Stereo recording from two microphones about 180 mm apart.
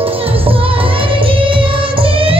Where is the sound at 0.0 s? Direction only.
30° right (ahead or behind).